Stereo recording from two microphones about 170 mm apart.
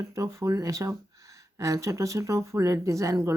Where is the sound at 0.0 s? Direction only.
20° right (ahead or behind).